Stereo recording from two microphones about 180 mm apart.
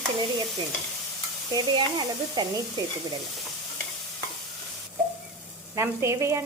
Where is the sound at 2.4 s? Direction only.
20° right (ahead or behind).